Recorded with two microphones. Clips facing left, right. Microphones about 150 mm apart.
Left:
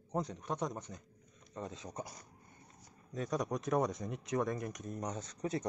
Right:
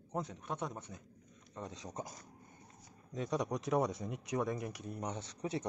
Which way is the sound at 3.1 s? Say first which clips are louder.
Even; 15° right (ahead or behind).